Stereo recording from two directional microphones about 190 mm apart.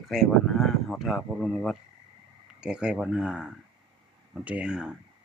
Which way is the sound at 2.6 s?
5° right (ahead or behind).